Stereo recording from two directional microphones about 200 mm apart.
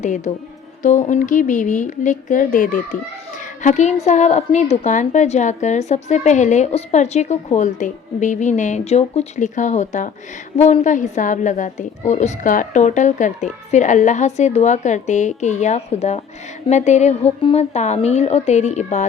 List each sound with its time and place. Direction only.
0.0 s a woman's voice: 35° left (ahead or behind)